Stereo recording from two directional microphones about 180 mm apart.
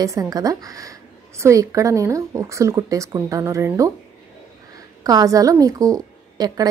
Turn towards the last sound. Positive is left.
turn(degrees=-20)  # may be behind; listen again after turning